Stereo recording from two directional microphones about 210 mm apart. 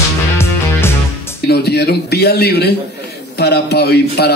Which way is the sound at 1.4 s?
50° left (ahead or behind).